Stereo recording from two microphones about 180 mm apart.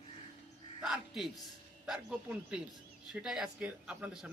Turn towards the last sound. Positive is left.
turn(degrees=-5)  # may be behind; listen again after turning